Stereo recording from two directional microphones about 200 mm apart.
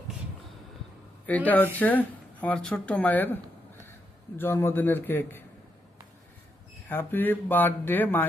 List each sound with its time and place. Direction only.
1.5 s speech: 10° left (ahead or behind)
4.4 s speech: 10° left (ahead or behind)
6.8 s speech: 10° left (ahead or behind)